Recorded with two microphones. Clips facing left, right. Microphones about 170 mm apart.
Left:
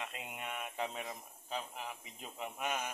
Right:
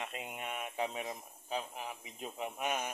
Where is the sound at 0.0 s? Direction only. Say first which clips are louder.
Right 2 dB; 25° right (ahead or behind).